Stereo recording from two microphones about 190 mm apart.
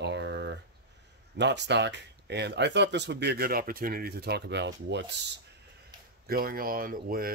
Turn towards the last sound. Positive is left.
turn(degrees=-50)  # may be behind; listen again after turning